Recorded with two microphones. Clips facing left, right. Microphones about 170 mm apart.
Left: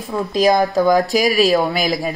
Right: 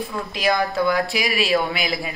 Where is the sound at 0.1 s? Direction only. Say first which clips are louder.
Left 9 dB; 40° left (ahead or behind).